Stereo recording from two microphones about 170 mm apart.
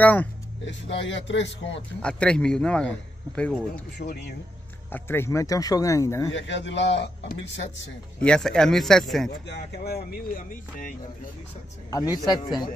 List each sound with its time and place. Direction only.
0.0 s speech: 10° left (ahead or behind)
0.7 s a man's voice: 90° left
2.0 s a man's voice: 5° left (ahead or behind)
4.9 s speech: 15° left (ahead or behind)
6.3 s a man's voice: 90° left
8.2 s a man's voice: 5° left (ahead or behind)
9.5 s speech: 75° left (ahead or behind)
11.9 s a man's voice: 20° left (ahead or behind)